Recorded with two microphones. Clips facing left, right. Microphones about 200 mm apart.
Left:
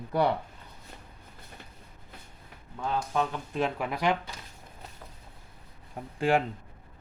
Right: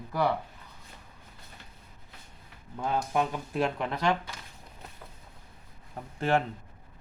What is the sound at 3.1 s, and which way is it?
Speech, 15° right (ahead or behind).